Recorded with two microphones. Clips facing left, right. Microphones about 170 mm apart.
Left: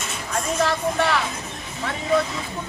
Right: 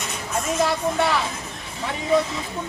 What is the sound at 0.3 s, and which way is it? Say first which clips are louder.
Speech: even; 10° right (ahead or behind).